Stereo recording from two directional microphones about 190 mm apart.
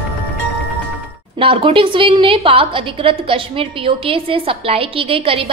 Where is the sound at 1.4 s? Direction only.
30° right (ahead or behind).